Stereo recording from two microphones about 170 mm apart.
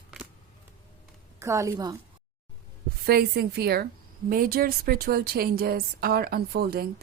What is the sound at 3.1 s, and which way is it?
Speech, 70° right (ahead or behind).